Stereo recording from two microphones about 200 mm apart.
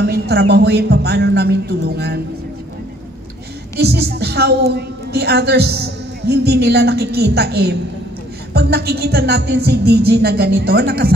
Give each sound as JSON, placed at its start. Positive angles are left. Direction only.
{"t": 0.0, "sound": "speech", "side_deg": -55}
{"t": 3.7, "sound": "a woman's voice", "side_deg": -55}